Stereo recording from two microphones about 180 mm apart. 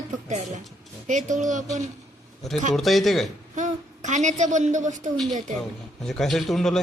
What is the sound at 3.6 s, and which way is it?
A woman's voice, 40° right (ahead or behind).